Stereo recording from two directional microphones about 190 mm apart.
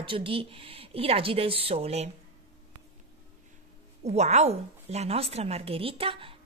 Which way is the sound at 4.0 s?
35° right (ahead or behind).